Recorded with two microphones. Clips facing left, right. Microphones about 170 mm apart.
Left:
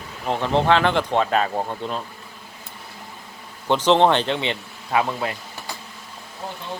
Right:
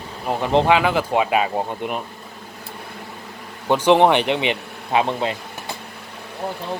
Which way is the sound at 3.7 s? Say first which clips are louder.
Right 2 dB; 10° right (ahead or behind).